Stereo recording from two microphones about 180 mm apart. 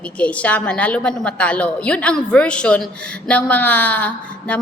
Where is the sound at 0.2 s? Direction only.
5° left (ahead or behind).